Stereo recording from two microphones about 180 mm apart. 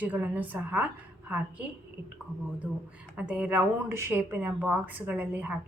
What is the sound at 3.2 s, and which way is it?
Speech, 5° right (ahead or behind).